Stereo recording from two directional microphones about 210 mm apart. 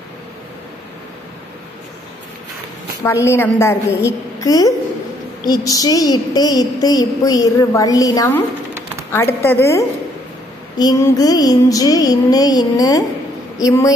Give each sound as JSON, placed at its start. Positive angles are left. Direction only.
{"t": 3.0, "sound": "a woman's voice", "side_deg": 15}